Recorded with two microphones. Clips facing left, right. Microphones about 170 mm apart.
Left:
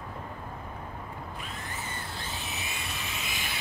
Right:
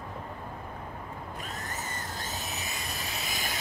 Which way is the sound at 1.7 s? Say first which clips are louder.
Right 1 dB; 40° right (ahead or behind).